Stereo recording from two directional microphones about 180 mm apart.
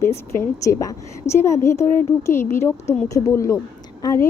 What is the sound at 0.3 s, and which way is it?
A woman's voice, 15° left (ahead or behind).